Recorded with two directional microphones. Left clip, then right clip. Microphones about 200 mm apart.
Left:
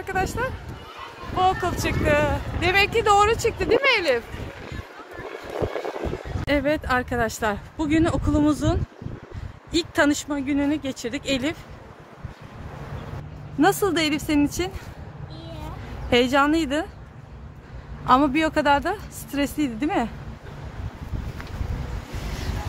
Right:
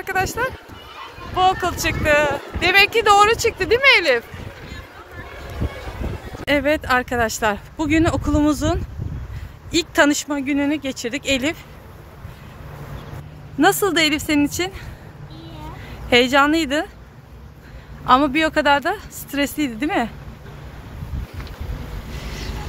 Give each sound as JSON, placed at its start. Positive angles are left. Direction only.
{"t": 0.0, "sound": "speech", "side_deg": -5}
{"t": 6.4, "sound": "speech", "side_deg": -10}
{"t": 13.6, "sound": "speech", "side_deg": -5}
{"t": 16.1, "sound": "speech", "side_deg": -5}
{"t": 18.0, "sound": "speech", "side_deg": 0}